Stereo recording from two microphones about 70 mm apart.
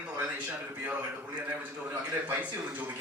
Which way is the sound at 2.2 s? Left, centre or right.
Right.